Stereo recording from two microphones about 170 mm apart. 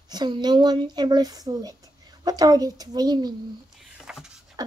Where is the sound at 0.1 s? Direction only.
25° right (ahead or behind).